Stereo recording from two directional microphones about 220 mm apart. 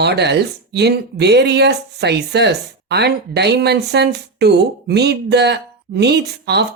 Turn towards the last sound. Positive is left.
turn(degrees=-50)  # may be behind; listen again after turning